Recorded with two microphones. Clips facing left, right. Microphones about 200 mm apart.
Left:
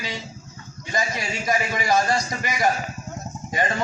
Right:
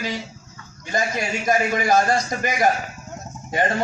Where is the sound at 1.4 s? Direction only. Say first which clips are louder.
Right 4 dB; 50° right (ahead or behind).